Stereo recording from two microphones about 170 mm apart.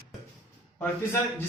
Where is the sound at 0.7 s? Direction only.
15° left (ahead or behind).